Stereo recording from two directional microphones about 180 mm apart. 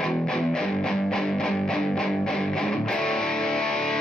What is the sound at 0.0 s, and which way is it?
Music, 5° left (ahead or behind).